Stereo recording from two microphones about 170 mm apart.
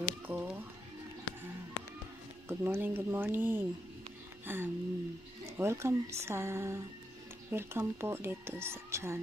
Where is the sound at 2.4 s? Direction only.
10° right (ahead or behind).